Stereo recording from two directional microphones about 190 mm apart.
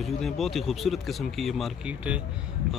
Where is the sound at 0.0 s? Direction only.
Centre (ahead or behind).